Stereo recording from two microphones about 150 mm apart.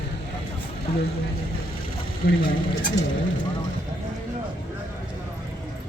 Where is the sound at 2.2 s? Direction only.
75° left (ahead or behind).